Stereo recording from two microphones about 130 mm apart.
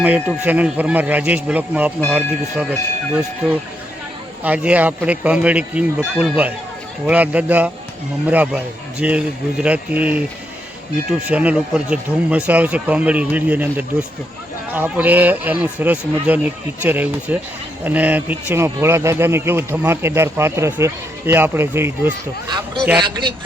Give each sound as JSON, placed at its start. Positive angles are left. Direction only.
{"t": 0.0, "sound": "speech", "side_deg": -10}
{"t": 22.4, "sound": "a man's voice", "side_deg": -35}